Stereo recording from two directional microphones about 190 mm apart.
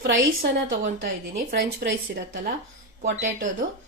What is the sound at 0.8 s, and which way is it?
Speech, 50° right (ahead or behind).